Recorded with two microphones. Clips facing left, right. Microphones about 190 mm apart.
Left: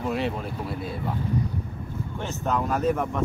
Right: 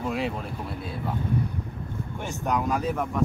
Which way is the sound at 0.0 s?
Centre (ahead or behind).